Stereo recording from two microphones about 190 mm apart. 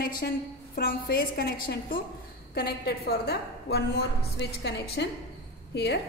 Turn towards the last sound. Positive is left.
turn(degrees=60)  # may be behind; listen again after turning